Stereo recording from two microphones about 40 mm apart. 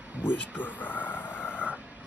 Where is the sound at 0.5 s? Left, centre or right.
Left.